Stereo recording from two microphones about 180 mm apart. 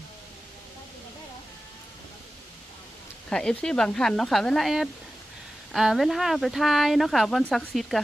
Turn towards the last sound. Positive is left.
turn(degrees=0)  # may be behind; listen again after turning